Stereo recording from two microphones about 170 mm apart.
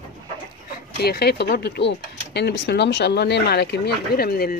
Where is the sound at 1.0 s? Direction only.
70° left (ahead or behind).